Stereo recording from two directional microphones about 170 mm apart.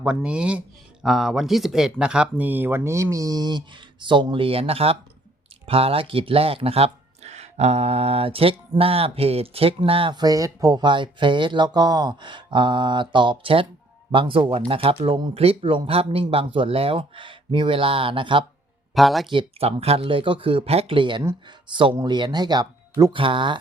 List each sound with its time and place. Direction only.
0.0 s speech: 5° right (ahead or behind); by 18.4 s 30° right (ahead or behind)
18.9 s speech: centre (ahead or behind)
19.3 s speech: 30° right (ahead or behind)